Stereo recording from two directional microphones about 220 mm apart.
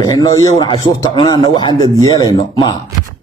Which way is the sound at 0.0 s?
15° left (ahead or behind).